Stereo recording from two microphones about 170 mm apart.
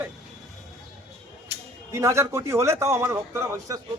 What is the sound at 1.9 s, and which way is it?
A man's voice, 15° right (ahead or behind).